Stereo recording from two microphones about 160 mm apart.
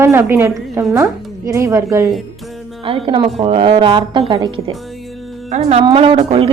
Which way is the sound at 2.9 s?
35° right (ahead or behind).